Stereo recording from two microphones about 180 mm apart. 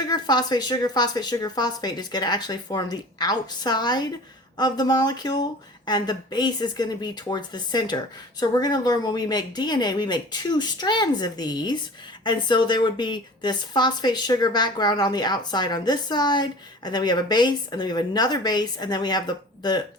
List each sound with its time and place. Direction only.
0.1 s speech: 25° left (ahead or behind)